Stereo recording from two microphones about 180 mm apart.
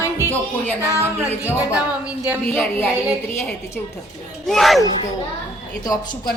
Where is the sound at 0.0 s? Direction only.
15° left (ahead or behind).